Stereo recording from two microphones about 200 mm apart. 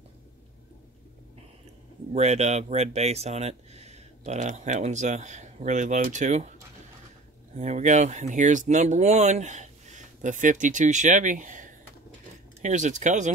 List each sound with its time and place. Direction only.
2.1 s speech: 35° right (ahead or behind)
7.5 s speech: 35° right (ahead or behind)